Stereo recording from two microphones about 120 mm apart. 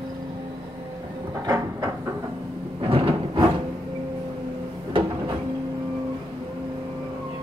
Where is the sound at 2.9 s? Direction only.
50° right (ahead or behind).